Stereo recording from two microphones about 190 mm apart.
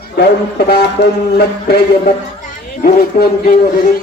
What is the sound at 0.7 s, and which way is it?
Speech, 60° left (ahead or behind).